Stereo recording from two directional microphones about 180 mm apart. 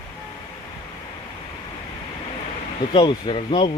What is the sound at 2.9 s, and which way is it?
Speech, 25° left (ahead or behind).